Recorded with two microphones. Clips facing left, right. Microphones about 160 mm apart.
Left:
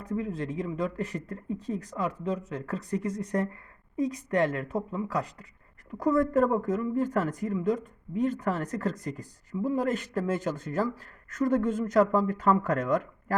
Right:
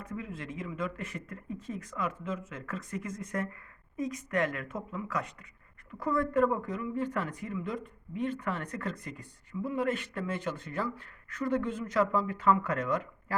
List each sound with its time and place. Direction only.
0.0 s speech: 35° left (ahead or behind)